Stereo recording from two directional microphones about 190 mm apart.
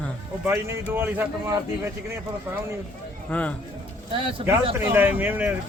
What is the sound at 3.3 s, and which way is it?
Speech, 5° left (ahead or behind).